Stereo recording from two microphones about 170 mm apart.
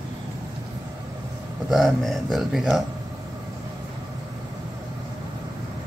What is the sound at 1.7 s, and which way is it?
Speech, centre (ahead or behind).